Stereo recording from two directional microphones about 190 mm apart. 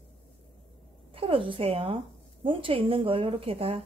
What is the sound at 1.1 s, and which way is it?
A woman's voice, 30° right (ahead or behind).